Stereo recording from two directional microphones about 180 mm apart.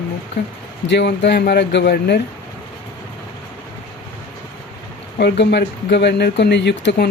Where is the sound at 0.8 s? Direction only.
75° left (ahead or behind).